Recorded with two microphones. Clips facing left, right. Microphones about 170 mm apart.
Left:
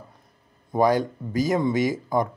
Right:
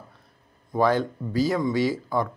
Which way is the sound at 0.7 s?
15° left (ahead or behind).